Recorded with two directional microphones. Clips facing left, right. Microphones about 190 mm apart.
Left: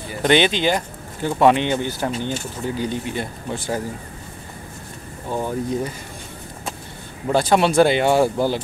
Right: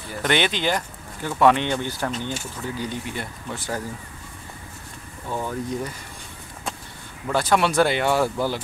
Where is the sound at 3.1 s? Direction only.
30° left (ahead or behind).